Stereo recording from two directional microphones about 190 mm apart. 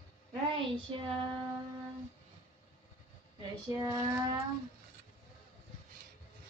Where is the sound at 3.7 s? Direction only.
15° right (ahead or behind).